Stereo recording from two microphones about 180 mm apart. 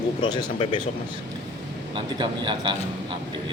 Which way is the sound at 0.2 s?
25° left (ahead or behind).